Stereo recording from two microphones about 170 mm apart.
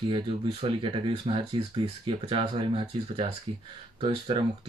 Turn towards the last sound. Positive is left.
turn(degrees=-30)  # may be behind; listen again after turning